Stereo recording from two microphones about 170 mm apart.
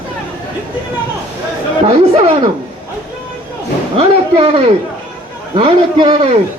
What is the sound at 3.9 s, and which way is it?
A man's voice, 35° right (ahead or behind).